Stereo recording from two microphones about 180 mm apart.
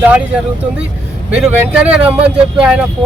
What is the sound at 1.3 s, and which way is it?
Speech, 10° right (ahead or behind).